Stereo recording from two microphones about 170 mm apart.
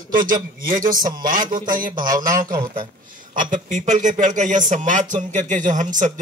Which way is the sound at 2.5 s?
25° right (ahead or behind).